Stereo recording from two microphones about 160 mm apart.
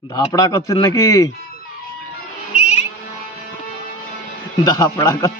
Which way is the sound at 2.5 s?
45° left (ahead or behind).